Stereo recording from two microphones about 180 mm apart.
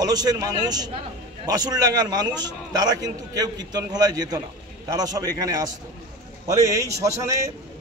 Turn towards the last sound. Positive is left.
turn(degrees=-15)  # may be behind; listen again after turning